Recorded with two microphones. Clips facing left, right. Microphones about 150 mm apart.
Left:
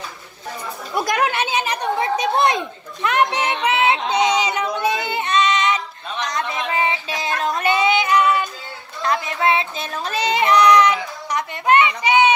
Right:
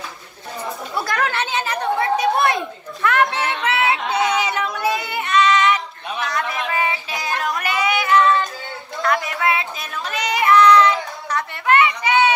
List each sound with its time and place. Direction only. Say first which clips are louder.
0.9 s chatter: left 3 dB; 15° left (ahead or behind)
4.1 s child singing: left 1 dB; 20° left (ahead or behind)
6.2 s a sound: even; 20° left (ahead or behind)
6.7 s child singing: left 1 dB; 25° left (ahead or behind)